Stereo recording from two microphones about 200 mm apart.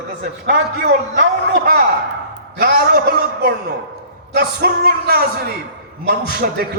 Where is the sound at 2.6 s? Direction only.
45° right (ahead or behind).